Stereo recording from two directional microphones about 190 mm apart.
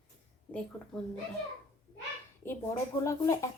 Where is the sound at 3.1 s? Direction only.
15° left (ahead or behind).